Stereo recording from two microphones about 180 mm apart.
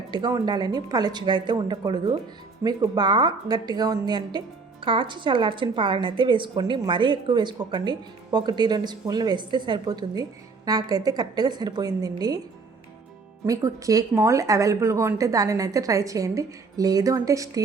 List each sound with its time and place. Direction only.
0.1 s a woman's voice: 20° right (ahead or behind)
13.4 s speech: 15° right (ahead or behind)